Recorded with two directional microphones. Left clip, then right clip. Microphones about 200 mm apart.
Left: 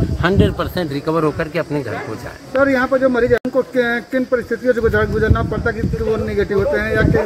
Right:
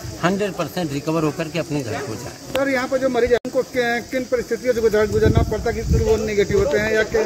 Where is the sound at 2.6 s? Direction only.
45° left (ahead or behind).